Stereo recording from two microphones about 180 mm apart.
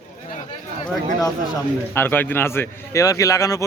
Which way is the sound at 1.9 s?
10° left (ahead or behind).